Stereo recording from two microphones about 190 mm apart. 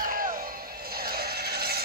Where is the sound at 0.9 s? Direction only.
55° right (ahead or behind).